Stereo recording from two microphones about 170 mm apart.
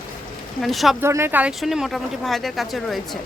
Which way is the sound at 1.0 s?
15° right (ahead or behind).